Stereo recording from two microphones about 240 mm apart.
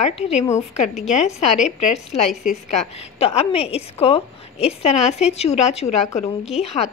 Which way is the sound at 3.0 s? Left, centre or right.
Left.